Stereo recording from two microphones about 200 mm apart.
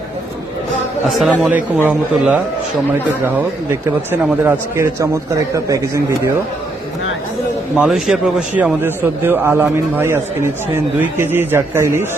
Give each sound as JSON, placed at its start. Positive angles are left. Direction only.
{"t": 1.1, "sound": "a man's voice", "side_deg": -5}
{"t": 3.7, "sound": "a man's voice", "side_deg": -10}
{"t": 7.8, "sound": "a man's voice", "side_deg": 0}
{"t": 11.2, "sound": "a man's voice", "side_deg": -10}